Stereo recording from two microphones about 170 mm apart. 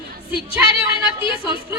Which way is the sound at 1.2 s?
30° left (ahead or behind).